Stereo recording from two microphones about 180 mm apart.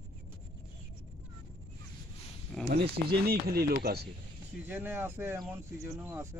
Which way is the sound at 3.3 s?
60° right (ahead or behind).